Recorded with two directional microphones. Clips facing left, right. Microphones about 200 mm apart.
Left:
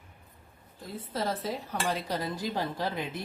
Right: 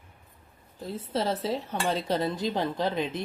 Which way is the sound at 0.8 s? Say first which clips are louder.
Right 4 dB; 25° right (ahead or behind).